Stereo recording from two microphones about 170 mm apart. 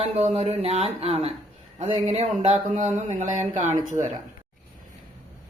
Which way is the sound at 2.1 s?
40° right (ahead or behind).